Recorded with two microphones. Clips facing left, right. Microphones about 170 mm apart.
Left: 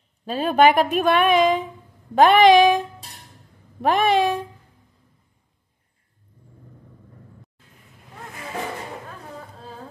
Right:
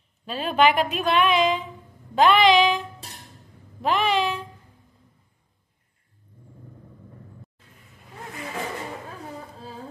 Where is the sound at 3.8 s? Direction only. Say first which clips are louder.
Left 4 dB; 50° left (ahead or behind).